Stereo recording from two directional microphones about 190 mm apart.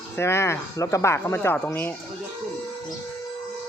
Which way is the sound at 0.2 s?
15° left (ahead or behind).